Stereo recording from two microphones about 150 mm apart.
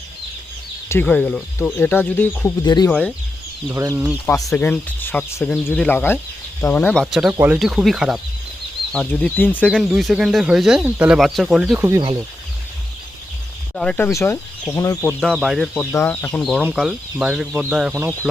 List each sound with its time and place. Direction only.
0.9 s speech: 10° left (ahead or behind)
2.6 s speech: 30° left (ahead or behind)
3.7 s speech: 15° right (ahead or behind)
4.5 s speech: 10° left (ahead or behind)
7.0 s speech: centre (ahead or behind)
8.9 s speech: 10° left (ahead or behind)
11.9 s speech: 30° right (ahead or behind)
13.7 s speech: 5° left (ahead or behind)
15.2 s speech: centre (ahead or behind)
17.9 s speech: 20° right (ahead or behind)